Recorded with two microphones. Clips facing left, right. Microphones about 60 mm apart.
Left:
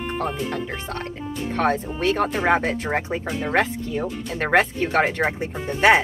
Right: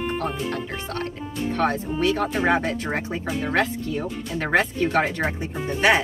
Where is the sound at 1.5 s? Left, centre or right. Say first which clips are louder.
Left 2 dB; left.